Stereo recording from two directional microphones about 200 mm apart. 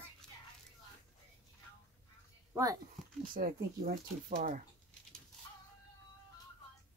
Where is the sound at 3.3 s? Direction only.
45° right (ahead or behind).